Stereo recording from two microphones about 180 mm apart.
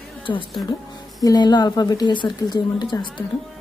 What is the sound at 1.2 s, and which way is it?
A woman's voice, 20° left (ahead or behind).